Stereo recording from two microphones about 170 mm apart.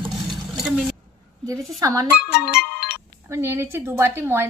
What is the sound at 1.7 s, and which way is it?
Speech, 20° right (ahead or behind).